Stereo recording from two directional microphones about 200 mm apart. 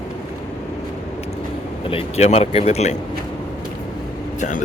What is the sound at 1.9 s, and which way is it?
Speech, 30° left (ahead or behind).